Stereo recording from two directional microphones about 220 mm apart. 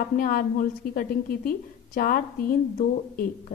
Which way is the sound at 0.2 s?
40° left (ahead or behind).